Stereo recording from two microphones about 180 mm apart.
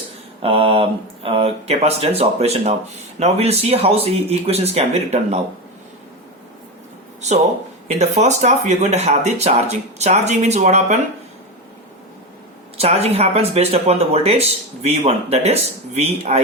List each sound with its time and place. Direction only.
0.4 s speech: 30° right (ahead or behind)
7.9 s speech: 40° right (ahead or behind)
12.7 s speech: 35° right (ahead or behind)